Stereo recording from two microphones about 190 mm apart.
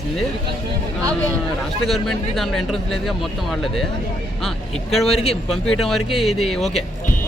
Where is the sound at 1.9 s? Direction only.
Centre (ahead or behind).